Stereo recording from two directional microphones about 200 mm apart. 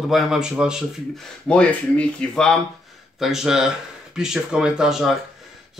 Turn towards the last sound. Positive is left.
turn(degrees=0)  # may be behind; listen again after turning